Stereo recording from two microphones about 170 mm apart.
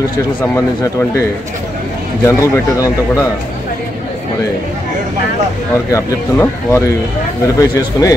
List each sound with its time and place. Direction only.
2.2 s speech: 15° left (ahead or behind)
5.9 s speech: 15° left (ahead or behind)